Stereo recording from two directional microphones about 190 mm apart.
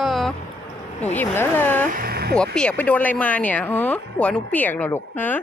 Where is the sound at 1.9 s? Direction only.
50° right (ahead or behind).